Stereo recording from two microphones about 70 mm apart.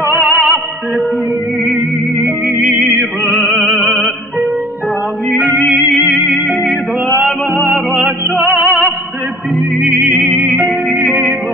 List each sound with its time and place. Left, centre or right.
0.0 s music: right
1.8 s music: right
3.6 s music: left
5.8 s music: centre
8.0 s music: centre
9.5 s music: centre
10.0 s music: centre